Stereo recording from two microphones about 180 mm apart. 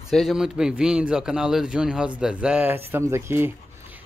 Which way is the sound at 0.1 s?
Centre (ahead or behind).